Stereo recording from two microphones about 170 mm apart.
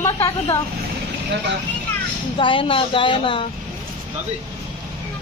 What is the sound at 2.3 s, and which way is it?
Speech, 30° left (ahead or behind).